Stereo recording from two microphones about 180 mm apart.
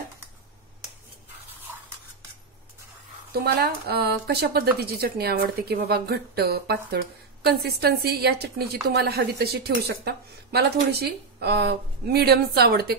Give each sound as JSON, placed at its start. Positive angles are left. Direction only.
{"t": 3.3, "sound": "a woman's voice", "side_deg": -65}